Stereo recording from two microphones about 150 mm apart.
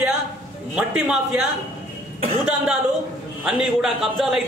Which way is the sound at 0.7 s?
5° right (ahead or behind).